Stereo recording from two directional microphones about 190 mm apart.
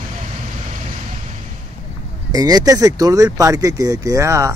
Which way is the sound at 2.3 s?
20° right (ahead or behind).